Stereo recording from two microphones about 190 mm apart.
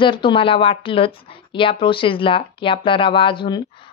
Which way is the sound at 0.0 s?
25° left (ahead or behind).